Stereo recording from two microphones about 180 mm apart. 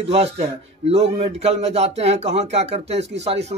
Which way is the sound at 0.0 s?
35° right (ahead or behind).